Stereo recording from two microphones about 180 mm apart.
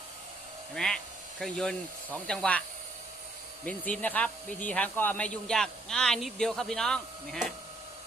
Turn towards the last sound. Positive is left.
turn(degrees=0)  # may be behind; listen again after turning